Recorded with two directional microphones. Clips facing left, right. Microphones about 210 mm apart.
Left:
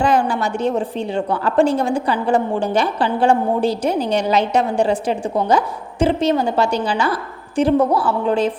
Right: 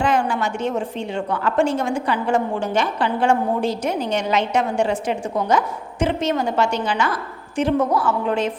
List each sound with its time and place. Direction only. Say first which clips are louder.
0.0 s a woman's voice: left 3 dB; 35° left (ahead or behind)